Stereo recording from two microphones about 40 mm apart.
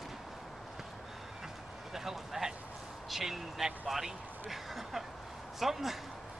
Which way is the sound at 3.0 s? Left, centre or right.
Centre.